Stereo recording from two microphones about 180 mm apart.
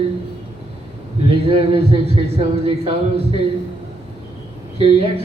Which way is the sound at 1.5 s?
30° right (ahead or behind).